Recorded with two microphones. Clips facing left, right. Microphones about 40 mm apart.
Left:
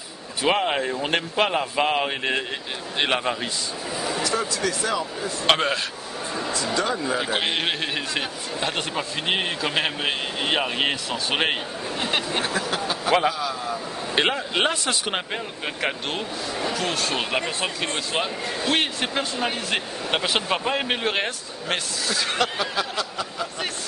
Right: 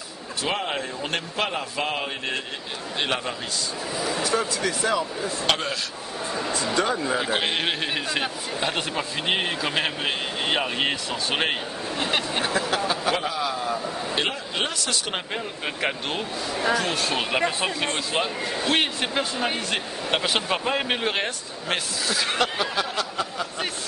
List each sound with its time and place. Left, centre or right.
0.4 s speech: centre
4.4 s a man's voice: centre
5.5 s speech: left
6.5 s speech: right
6.9 s a man's voice: centre
12.7 s a sound: centre
13.4 s a man's voice: centre
14.1 s speech: left
15.0 s speech: centre
15.6 s a man's voice: centre